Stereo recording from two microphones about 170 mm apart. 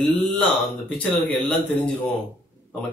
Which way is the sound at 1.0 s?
5° left (ahead or behind).